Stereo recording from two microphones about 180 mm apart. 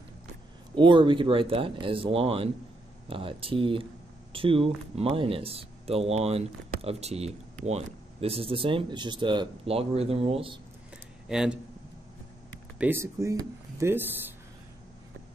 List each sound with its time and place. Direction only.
0.7 s speech: 25° right (ahead or behind)
11.2 s speech: 5° right (ahead or behind)
12.7 s speech: 10° right (ahead or behind)